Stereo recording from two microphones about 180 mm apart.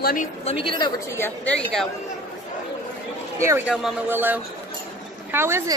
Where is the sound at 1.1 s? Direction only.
10° left (ahead or behind).